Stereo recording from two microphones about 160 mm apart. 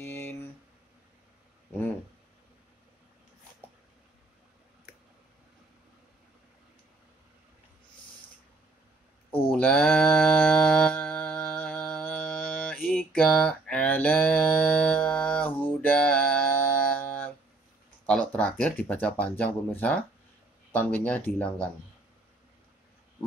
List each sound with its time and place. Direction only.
0.0 s a sound: 15° left (ahead or behind)
9.5 s mantra: 10° left (ahead or behind)
18.0 s speech: 5° left (ahead or behind)